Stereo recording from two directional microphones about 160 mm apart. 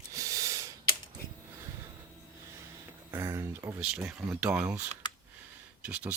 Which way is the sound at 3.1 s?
20° right (ahead or behind).